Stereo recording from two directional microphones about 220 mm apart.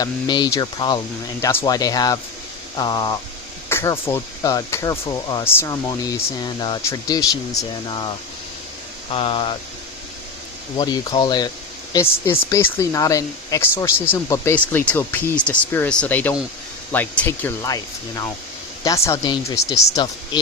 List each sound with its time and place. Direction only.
0.0 s speech: 20° left (ahead or behind)
9.1 s speech: 25° left (ahead or behind)
10.8 s speech: 20° left (ahead or behind)
18.9 s speech: 15° left (ahead or behind)